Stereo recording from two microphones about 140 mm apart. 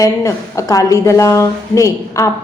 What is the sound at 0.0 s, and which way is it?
A woman's voice, 25° left (ahead or behind).